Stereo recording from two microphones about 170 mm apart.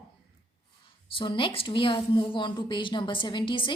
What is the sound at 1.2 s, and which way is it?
A woman's voice, 30° left (ahead or behind).